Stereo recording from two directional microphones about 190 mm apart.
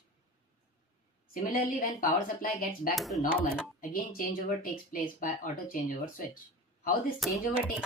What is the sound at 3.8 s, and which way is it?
Speech, 45° left (ahead or behind).